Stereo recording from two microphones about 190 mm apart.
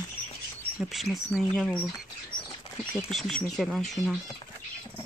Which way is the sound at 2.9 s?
Centre (ahead or behind).